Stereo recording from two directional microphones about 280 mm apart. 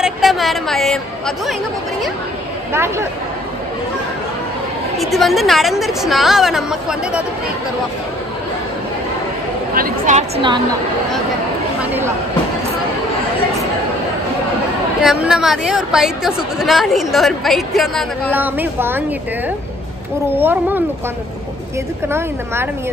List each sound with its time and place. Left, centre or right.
0.0 s speech: centre
2.7 s speech: centre
4.9 s a woman's voice: centre
9.8 s a woman's voice: right
11.8 s speech: centre
15.0 s a woman's voice: centre
20.3 s speech: centre